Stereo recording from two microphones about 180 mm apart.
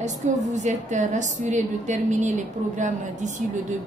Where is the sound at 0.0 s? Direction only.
40° right (ahead or behind).